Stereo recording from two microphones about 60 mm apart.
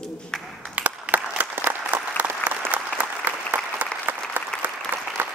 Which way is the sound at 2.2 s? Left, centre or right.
Right.